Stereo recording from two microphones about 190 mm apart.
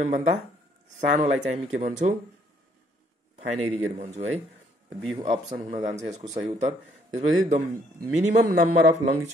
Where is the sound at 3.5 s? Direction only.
35° right (ahead or behind).